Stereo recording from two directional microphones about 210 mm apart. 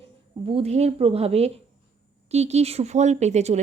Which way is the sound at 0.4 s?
30° right (ahead or behind).